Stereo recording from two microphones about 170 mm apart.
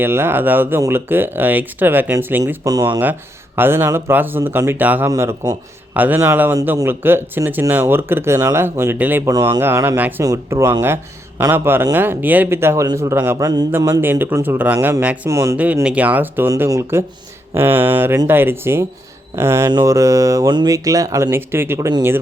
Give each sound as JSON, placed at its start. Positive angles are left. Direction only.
{"t": 0.0, "sound": "speech", "side_deg": -15}